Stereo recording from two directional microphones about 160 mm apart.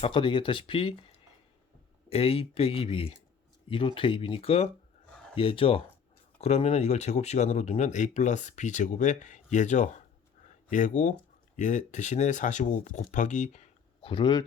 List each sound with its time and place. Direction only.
0.0 s speech: 30° left (ahead or behind)
14.1 s speech: 30° left (ahead or behind)